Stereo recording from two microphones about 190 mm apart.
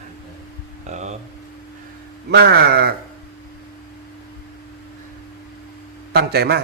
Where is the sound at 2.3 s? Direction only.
60° right (ahead or behind).